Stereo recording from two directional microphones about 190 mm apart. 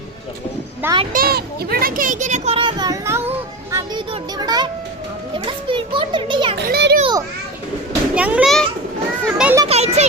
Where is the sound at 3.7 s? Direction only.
20° right (ahead or behind).